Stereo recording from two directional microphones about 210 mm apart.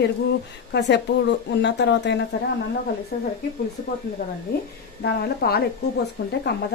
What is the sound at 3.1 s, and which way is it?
Speech, 45° left (ahead or behind).